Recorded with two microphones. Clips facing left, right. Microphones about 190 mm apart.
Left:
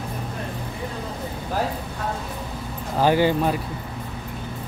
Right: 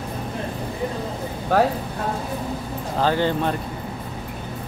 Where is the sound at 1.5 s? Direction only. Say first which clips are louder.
Right 8 dB; 70° right (ahead or behind).